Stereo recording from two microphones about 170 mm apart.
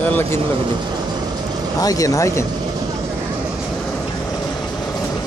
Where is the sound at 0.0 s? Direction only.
10° left (ahead or behind).